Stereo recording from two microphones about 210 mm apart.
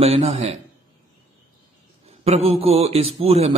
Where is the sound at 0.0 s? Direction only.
30° right (ahead or behind).